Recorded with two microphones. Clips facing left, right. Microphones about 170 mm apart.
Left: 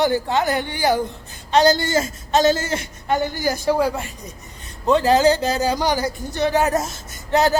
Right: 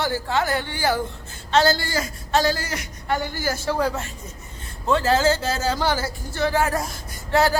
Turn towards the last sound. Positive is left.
turn(degrees=20)  # may be behind; listen again after turning